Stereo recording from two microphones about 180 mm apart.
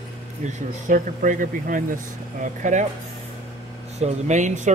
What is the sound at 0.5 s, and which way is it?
Speech, 45° right (ahead or behind).